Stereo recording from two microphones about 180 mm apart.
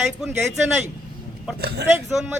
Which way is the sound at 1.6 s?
65° right (ahead or behind).